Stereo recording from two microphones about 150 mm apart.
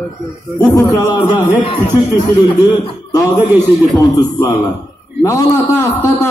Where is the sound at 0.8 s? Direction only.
25° left (ahead or behind).